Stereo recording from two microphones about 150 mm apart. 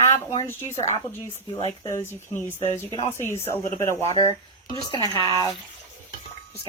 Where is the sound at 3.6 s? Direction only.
20° left (ahead or behind).